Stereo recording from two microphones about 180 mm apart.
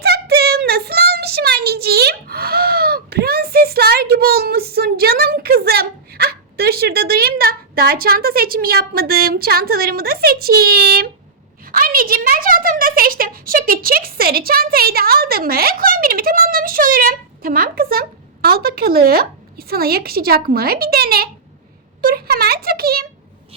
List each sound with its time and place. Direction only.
0.0 s child singing: 60° right (ahead or behind)
11.6 s a woman's voice: 50° right (ahead or behind)